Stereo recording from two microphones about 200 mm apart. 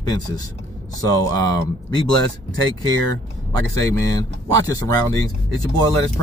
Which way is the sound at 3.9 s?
15° left (ahead or behind).